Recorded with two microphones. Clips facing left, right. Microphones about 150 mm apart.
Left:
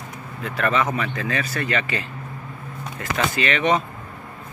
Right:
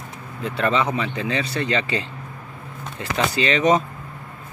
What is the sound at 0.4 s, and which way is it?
Speech, 30° right (ahead or behind).